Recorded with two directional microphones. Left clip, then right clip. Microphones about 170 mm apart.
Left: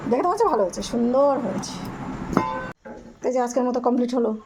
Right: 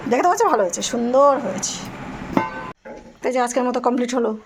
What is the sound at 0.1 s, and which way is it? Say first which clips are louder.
Speech: right 4 dB; centre (ahead or behind).